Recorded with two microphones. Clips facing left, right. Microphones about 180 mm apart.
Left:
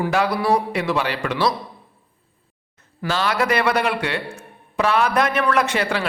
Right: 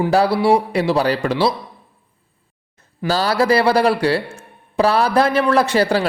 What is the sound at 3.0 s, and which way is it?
A man's voice, 35° right (ahead or behind).